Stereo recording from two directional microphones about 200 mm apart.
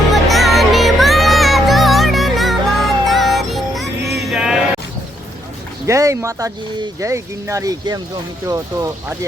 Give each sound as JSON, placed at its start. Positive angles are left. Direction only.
{"t": 0.1, "sound": "music", "side_deg": 0}
{"t": 5.8, "sound": "speech", "side_deg": -15}